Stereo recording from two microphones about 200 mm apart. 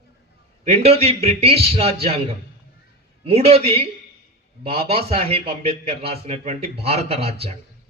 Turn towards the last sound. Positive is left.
turn(degrees=-30)  # may be behind; listen again after turning